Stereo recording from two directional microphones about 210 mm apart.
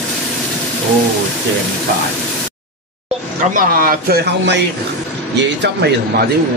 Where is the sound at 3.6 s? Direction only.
40° right (ahead or behind).